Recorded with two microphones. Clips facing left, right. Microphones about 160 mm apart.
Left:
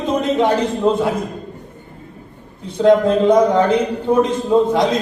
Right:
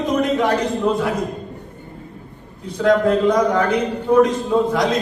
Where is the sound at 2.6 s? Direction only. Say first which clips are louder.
Left 3 dB; 25° left (ahead or behind).